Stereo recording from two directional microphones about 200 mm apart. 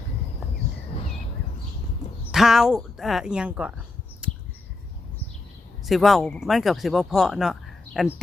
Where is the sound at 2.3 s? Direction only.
Centre (ahead or behind).